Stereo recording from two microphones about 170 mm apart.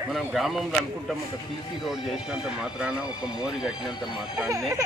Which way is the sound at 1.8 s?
5° right (ahead or behind).